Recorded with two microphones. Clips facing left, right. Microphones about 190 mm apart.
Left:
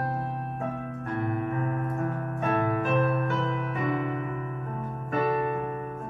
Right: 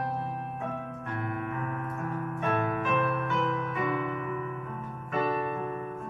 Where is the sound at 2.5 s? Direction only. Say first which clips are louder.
Left 3 dB; 35° left (ahead or behind).